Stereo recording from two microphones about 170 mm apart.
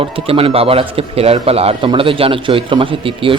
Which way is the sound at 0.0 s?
35° right (ahead or behind).